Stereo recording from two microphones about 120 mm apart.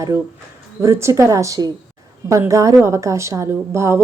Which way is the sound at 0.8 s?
25° right (ahead or behind).